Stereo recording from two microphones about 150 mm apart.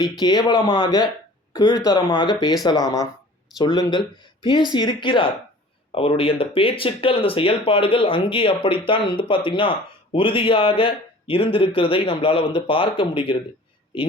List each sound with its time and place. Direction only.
0.0 s speech: 30° left (ahead or behind)